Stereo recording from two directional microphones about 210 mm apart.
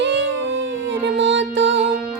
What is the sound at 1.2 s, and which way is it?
Music, 60° right (ahead or behind).